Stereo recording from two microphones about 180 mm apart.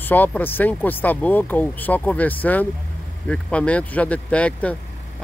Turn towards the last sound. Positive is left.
turn(degrees=5)  # may be behind; listen again after turning